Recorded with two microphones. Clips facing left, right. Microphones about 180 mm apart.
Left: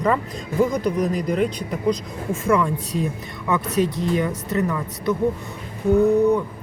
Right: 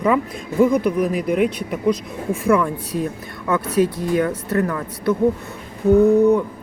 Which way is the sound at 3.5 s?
20° left (ahead or behind).